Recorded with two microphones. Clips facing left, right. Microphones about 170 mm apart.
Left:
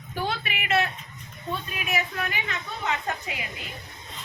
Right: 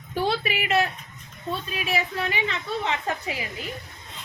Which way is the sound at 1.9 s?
30° right (ahead or behind).